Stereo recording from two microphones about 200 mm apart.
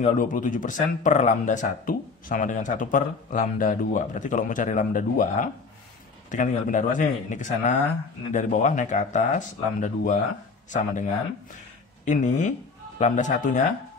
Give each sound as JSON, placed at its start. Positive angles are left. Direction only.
{"t": 0.0, "sound": "speech", "side_deg": 40}